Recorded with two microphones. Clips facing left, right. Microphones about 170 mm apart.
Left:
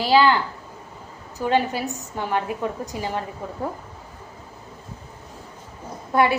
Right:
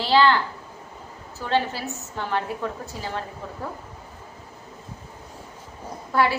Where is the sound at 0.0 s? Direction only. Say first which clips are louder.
Left 2 dB; 10° left (ahead or behind).